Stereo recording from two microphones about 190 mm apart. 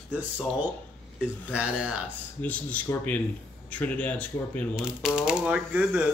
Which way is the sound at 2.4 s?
10° left (ahead or behind).